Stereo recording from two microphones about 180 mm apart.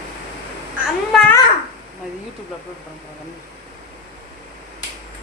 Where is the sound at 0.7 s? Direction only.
5° left (ahead or behind).